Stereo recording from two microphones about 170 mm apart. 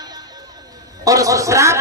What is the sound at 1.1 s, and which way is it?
Speech, 20° right (ahead or behind).